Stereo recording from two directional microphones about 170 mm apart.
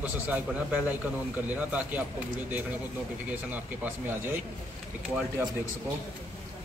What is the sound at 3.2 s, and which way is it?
A man's voice, 10° right (ahead or behind).